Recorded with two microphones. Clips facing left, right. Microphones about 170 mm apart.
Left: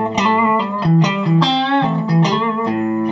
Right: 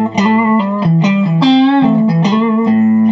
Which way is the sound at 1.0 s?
15° right (ahead or behind).